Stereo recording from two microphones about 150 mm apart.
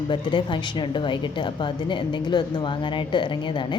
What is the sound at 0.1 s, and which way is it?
A woman's voice, 30° left (ahead or behind).